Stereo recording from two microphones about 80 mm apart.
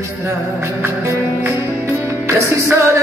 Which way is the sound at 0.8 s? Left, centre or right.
Right.